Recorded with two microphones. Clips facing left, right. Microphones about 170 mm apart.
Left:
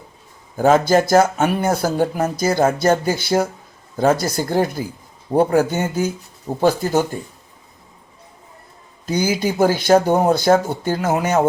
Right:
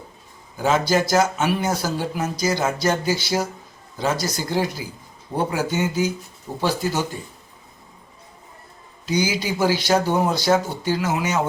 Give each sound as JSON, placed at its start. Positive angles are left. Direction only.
{"t": 0.5, "sound": "speech", "side_deg": 50}
{"t": 9.0, "sound": "speech", "side_deg": 50}